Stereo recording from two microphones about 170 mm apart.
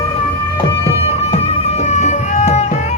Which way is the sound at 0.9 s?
35° left (ahead or behind).